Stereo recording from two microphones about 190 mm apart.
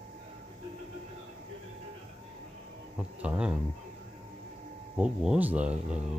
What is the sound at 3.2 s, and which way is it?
Speech, 5° right (ahead or behind).